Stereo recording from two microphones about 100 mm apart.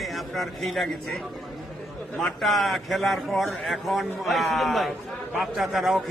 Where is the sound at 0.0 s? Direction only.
Centre (ahead or behind).